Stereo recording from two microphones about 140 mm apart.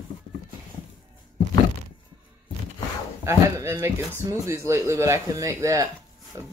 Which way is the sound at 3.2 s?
20° right (ahead or behind).